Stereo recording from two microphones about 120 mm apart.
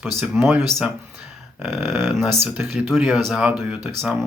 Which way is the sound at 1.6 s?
Centre (ahead or behind).